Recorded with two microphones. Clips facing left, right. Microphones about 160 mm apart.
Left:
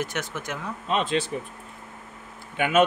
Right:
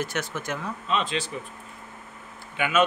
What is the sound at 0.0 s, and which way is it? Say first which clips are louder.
Speech: even; 15° left (ahead or behind).